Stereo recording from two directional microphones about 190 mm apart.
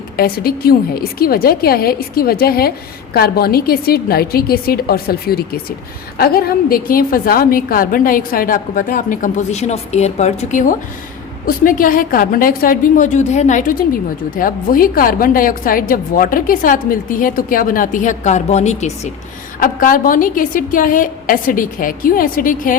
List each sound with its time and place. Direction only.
0.2 s a woman's voice: 50° left (ahead or behind)